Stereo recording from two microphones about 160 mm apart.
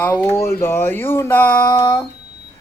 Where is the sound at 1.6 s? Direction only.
30° left (ahead or behind).